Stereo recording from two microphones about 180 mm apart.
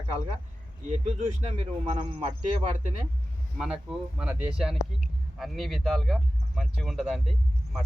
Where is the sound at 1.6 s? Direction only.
40° right (ahead or behind).